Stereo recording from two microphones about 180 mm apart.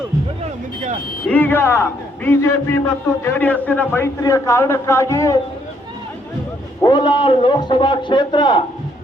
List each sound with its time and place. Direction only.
1.3 s a man's voice: 10° left (ahead or behind)
6.8 s a man's voice: 25° left (ahead or behind)